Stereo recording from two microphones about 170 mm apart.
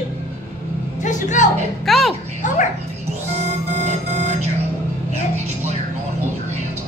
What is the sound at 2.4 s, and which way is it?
Speech, 45° left (ahead or behind).